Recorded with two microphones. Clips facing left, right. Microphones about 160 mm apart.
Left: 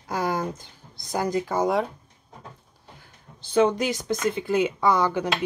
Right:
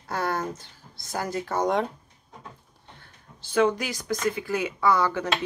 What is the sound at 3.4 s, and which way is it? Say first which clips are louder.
Speech: left 2 dB; 20° left (ahead or behind).